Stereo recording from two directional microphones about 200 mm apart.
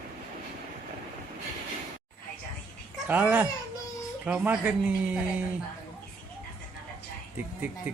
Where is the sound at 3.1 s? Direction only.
10° right (ahead or behind).